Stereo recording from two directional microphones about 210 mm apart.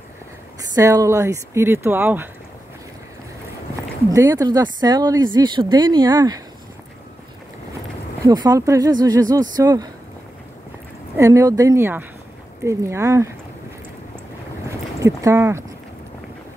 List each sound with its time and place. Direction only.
0.7 s speech: 15° right (ahead or behind)
4.1 s speech: 15° right (ahead or behind)
8.3 s speech: 15° right (ahead or behind)
11.1 s speech: 15° right (ahead or behind)
14.7 s a sound: 15° right (ahead or behind)